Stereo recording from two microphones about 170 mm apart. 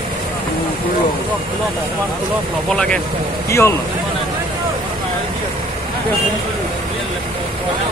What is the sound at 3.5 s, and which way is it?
Speech, 15° left (ahead or behind).